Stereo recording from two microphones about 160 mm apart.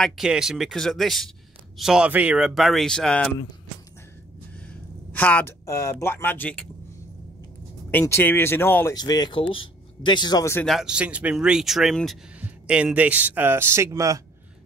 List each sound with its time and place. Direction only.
0.0 s speech: centre (ahead or behind)
5.1 s speech: 10° left (ahead or behind)
7.9 s speech: 15° left (ahead or behind)
8.9 s speech: 25° left (ahead or behind)
10.5 s speech: 5° left (ahead or behind); by 14.2 s 20° right (ahead or behind)